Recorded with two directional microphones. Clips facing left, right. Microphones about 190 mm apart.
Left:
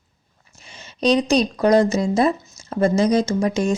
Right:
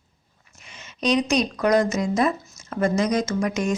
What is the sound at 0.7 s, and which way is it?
Speech, 30° left (ahead or behind).